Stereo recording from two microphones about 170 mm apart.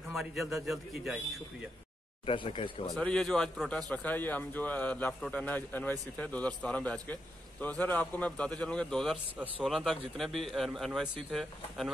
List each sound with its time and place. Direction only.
0.1 s a man's voice: centre (ahead or behind)
2.2 s speech: 30° left (ahead or behind)
2.9 s a man's voice: 5° left (ahead or behind)